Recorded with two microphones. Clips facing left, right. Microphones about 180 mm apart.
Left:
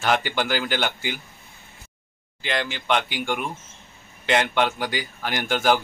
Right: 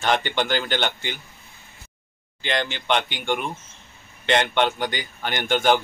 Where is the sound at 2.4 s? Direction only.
5° left (ahead or behind).